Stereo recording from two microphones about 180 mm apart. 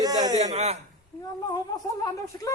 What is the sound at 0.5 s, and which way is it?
Speech, 35° right (ahead or behind).